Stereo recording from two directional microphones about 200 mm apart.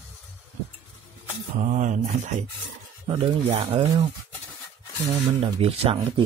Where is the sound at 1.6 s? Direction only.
35° right (ahead or behind).